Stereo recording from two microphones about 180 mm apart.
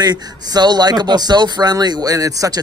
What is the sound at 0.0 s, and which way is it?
Speech, 25° right (ahead or behind).